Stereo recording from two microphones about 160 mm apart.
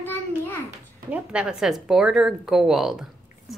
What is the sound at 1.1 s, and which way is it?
A woman's voice, 5° right (ahead or behind).